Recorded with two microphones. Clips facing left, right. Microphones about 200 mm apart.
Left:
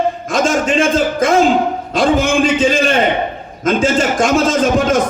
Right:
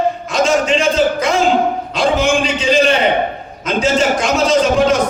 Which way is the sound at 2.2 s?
50° left (ahead or behind).